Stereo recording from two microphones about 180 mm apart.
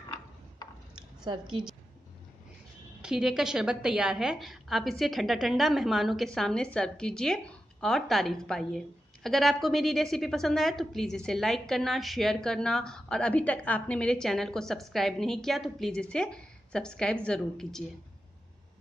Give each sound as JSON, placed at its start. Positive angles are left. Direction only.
{"t": 0.6, "sound": "a sound", "side_deg": 20}
{"t": 0.9, "sound": "squish", "side_deg": -25}
{"t": 3.0, "sound": "a woman's voice", "side_deg": -5}